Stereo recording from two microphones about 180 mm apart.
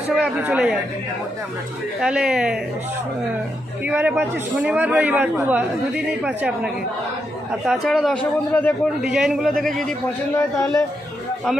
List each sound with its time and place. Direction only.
0.2 s a man's voice: 5° right (ahead or behind)
2.0 s a man's voice: 5° right (ahead or behind)
3.8 s a man's voice: 10° right (ahead or behind); by 8.7 s 10° left (ahead or behind)
9.1 s a man's voice: centre (ahead or behind)
10.3 s a man's voice: 15° left (ahead or behind)